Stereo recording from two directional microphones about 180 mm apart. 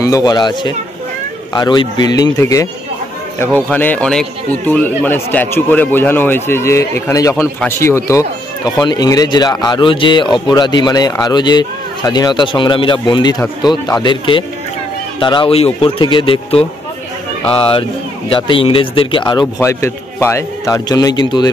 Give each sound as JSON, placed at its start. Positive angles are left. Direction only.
{"t": 0.0, "sound": "speech", "side_deg": 20}
{"t": 3.7, "sound": "a man's voice", "side_deg": 10}